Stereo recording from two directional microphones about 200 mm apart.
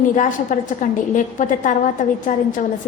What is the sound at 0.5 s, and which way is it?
A woman's voice, 45° left (ahead or behind).